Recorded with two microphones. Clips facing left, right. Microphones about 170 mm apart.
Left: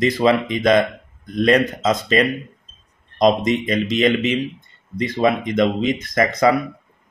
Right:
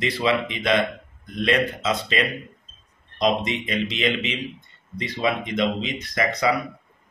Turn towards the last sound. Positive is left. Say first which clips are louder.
# left 6 dB
turn(degrees=45)  # may be behind; listen again after turning